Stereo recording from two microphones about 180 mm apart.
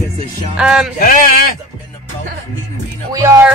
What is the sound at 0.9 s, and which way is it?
Speech, 50° left (ahead or behind).